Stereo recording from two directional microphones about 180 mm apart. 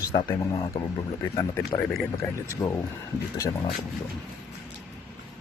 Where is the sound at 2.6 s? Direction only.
20° left (ahead or behind).